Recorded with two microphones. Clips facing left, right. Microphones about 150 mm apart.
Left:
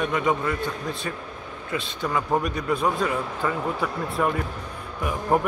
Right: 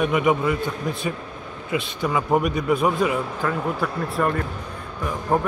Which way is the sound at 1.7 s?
15° right (ahead or behind).